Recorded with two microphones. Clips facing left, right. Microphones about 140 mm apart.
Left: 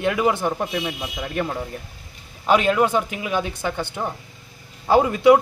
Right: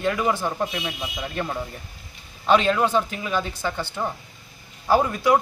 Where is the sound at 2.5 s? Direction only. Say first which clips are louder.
Left 1 dB; 5° left (ahead or behind).